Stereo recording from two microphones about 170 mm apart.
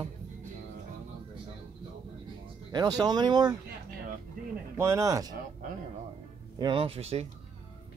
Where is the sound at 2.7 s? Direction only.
25° right (ahead or behind).